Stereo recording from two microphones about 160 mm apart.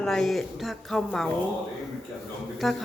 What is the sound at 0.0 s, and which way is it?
Speech, centre (ahead or behind).